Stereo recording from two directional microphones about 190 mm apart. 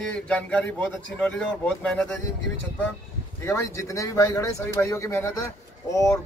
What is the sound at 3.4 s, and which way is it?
A man's voice, 15° left (ahead or behind).